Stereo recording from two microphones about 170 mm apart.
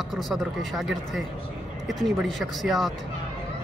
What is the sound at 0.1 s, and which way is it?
A man's voice, centre (ahead or behind).